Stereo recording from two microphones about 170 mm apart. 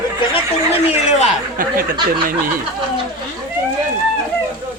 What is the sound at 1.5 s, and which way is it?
Speech, 55° right (ahead or behind).